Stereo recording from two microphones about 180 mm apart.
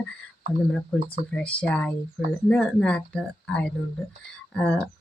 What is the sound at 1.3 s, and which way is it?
Speech, 5° left (ahead or behind).